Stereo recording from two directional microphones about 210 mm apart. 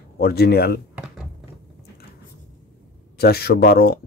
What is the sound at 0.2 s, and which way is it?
Speech, 50° left (ahead or behind).